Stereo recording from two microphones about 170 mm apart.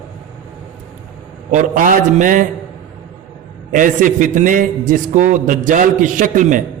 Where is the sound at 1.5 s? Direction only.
50° right (ahead or behind).